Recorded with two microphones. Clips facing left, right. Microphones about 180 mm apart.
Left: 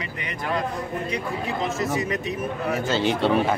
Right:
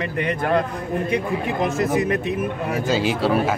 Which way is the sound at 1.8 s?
55° right (ahead or behind).